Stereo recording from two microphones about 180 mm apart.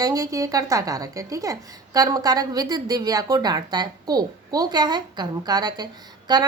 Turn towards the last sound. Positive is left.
turn(degrees=-25)  # may be behind; listen again after turning